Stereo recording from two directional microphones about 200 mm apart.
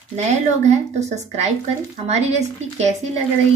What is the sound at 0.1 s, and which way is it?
Speech, 35° right (ahead or behind).